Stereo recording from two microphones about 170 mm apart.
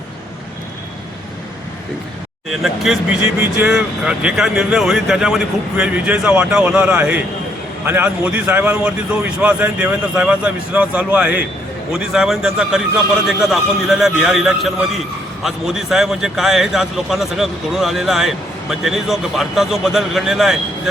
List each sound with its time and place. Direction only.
2.5 s a man's voice: centre (ahead or behind)
3.2 s speech: 15° right (ahead or behind)
3.7 s a man's voice: 5° right (ahead or behind)